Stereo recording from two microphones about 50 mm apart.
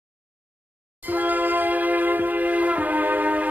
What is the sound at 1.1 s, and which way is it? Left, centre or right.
Music, right.